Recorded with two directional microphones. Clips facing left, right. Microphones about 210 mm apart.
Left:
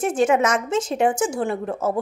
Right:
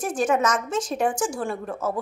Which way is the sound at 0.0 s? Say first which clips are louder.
Left 4 dB; 25° left (ahead or behind).